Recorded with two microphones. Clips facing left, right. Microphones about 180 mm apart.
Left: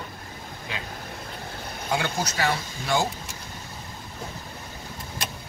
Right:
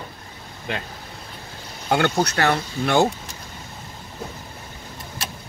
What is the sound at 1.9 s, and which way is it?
Speech, 65° right (ahead or behind).